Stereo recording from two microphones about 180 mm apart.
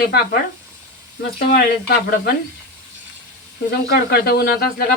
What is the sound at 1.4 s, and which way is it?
Speech, 55° left (ahead or behind).